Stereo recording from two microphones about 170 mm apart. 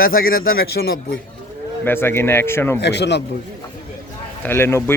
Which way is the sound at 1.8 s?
15° left (ahead or behind).